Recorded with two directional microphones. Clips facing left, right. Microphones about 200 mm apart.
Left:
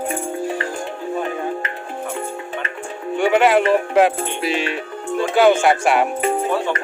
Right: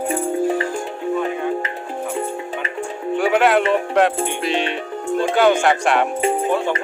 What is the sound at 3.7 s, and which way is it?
Music, 5° left (ahead or behind).